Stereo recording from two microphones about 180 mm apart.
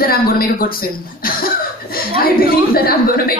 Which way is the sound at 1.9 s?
55° left (ahead or behind).